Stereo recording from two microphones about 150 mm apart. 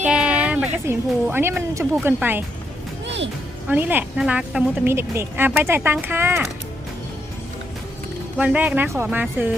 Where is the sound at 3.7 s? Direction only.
10° right (ahead or behind).